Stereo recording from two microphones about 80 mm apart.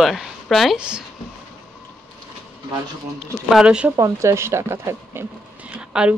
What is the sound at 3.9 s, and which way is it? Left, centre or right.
Speech, right.